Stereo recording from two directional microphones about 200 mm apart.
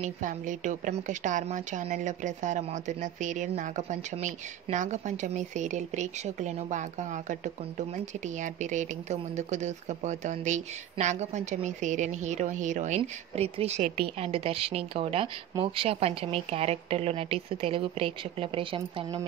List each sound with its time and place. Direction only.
0.0 s a woman's voice: 40° right (ahead or behind)